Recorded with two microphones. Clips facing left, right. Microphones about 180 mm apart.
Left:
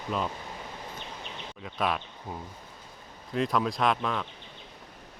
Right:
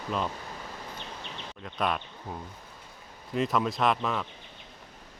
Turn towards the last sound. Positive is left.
turn(degrees=0)  # may be behind; listen again after turning